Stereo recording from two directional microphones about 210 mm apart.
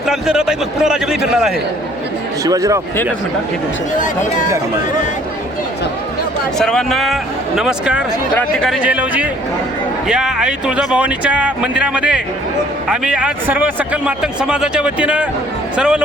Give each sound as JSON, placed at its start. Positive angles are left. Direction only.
{"t": 0.1, "sound": "a man's voice", "side_deg": -5}
{"t": 2.4, "sound": "speech", "side_deg": -15}
{"t": 3.9, "sound": "speech", "side_deg": 40}
{"t": 6.6, "sound": "a man's voice", "side_deg": 0}